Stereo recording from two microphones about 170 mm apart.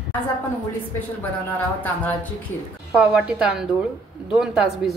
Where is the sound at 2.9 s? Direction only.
5° right (ahead or behind).